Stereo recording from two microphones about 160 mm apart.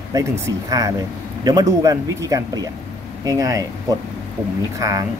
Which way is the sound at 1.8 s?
20° right (ahead or behind).